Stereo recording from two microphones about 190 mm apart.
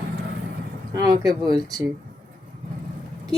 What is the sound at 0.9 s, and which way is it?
Speech, 20° right (ahead or behind).